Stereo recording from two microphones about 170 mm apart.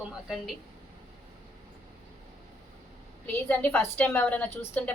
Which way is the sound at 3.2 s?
10° left (ahead or behind).